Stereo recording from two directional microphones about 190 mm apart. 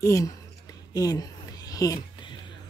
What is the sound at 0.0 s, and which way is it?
Speech, 15° left (ahead or behind).